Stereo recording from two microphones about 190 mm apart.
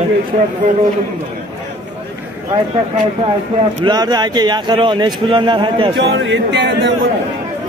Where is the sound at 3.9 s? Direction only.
20° right (ahead or behind).